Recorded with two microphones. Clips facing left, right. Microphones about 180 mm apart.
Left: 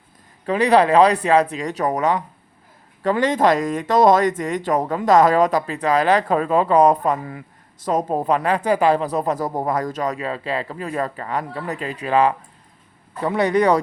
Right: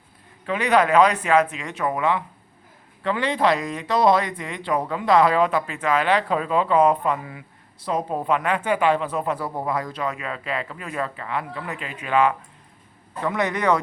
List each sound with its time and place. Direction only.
0.4 s speech: 35° left (ahead or behind)